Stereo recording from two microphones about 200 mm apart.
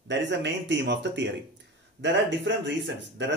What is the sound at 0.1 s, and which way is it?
A man's voice, 60° right (ahead or behind).